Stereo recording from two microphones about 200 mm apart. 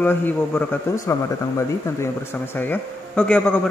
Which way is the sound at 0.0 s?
10° left (ahead or behind).